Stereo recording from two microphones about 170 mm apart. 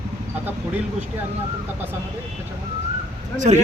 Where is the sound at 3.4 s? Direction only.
45° right (ahead or behind).